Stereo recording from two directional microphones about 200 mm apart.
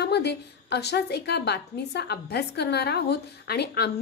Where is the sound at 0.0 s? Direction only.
55° left (ahead or behind).